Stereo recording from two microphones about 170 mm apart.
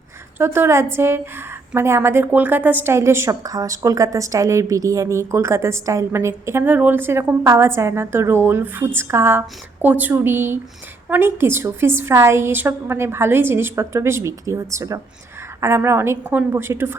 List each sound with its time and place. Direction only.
0.3 s a woman's voice: 15° right (ahead or behind)